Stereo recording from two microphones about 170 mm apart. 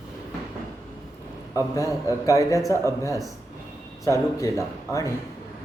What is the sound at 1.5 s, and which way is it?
A man's voice, 20° left (ahead or behind).